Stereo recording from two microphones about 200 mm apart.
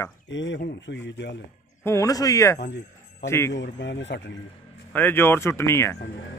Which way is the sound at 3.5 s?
60° left (ahead or behind).